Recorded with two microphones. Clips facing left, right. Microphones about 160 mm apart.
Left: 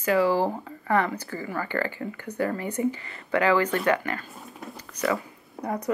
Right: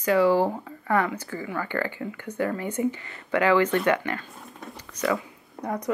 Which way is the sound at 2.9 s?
35° left (ahead or behind).